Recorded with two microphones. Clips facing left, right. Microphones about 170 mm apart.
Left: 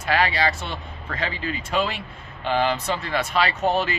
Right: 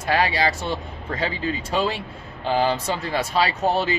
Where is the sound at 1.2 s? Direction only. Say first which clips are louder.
Right 3 dB; 35° right (ahead or behind).